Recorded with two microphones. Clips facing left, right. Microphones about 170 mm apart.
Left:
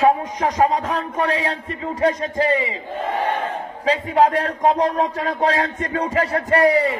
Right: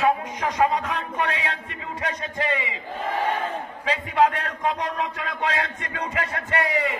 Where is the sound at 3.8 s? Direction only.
35° left (ahead or behind).